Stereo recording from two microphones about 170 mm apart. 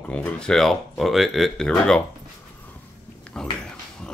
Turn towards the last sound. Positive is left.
turn(degrees=5)  # may be behind; listen again after turning